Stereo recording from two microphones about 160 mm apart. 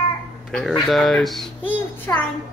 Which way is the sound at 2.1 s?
15° left (ahead or behind).